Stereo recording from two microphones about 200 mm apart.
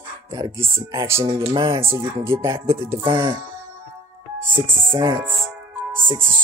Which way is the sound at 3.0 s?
25° right (ahead or behind).